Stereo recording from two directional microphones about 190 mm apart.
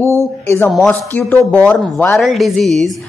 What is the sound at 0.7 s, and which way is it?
A woman's voice, centre (ahead or behind).